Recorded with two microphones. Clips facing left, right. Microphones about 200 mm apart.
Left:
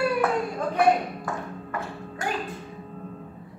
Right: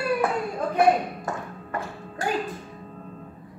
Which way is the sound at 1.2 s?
35° right (ahead or behind).